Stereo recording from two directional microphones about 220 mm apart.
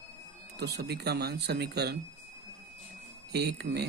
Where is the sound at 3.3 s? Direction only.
50° right (ahead or behind).